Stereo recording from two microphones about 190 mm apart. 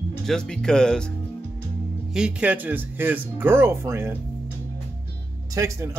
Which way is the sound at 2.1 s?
5° right (ahead or behind).